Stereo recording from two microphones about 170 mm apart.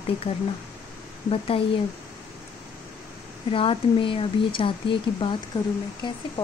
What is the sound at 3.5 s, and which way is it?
Speech, 30° left (ahead or behind).